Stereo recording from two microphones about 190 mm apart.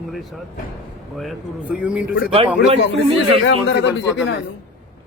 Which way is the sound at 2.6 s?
30° right (ahead or behind).